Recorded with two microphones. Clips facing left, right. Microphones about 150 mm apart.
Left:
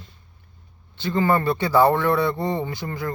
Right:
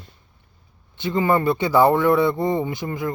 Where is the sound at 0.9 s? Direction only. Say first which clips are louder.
Right 1 dB; 20° right (ahead or behind).